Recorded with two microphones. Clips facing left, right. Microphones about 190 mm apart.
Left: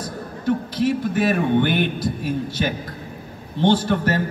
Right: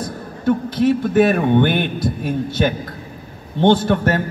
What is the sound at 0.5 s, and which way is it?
A man's voice, 55° right (ahead or behind).